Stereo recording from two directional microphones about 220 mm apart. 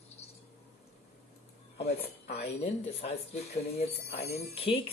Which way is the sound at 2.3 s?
25° left (ahead or behind).